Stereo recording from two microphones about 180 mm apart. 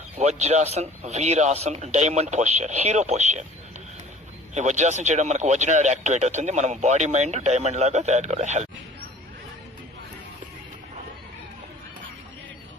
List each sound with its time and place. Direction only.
0.2 s speech: 40° right (ahead or behind)
4.5 s speech: 40° right (ahead or behind)